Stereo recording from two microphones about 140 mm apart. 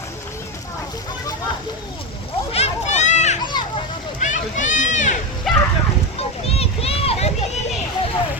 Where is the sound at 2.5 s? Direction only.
50° left (ahead or behind).